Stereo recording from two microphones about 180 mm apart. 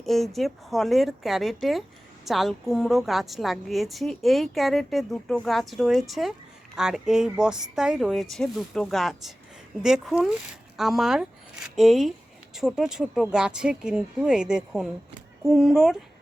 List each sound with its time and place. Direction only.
0.0 s a woman's voice: centre (ahead or behind)